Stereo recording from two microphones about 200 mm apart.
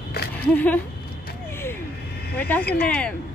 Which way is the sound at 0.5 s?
10° left (ahead or behind).